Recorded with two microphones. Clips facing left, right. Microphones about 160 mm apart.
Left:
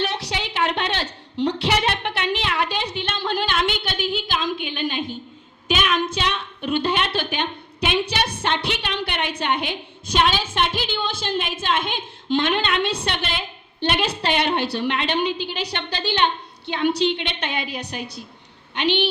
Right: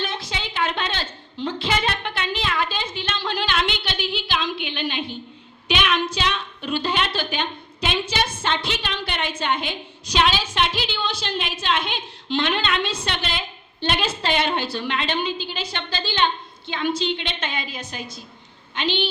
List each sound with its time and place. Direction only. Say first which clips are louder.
0.0 s a sound: left 3 dB; 75° left (ahead or behind); by 5.1 s 45° left (ahead or behind)
5.6 s child singing: left 1 dB; 45° left (ahead or behind)
6.7 s a woman's voice: left 2 dB; 60° left (ahead or behind)